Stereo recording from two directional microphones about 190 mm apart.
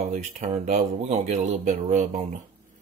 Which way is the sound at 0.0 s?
35° right (ahead or behind).